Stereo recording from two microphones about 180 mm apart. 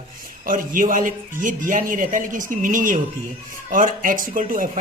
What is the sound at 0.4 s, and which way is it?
Speech, 50° right (ahead or behind).